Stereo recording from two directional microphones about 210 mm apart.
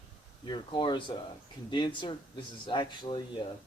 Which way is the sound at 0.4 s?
20° left (ahead or behind).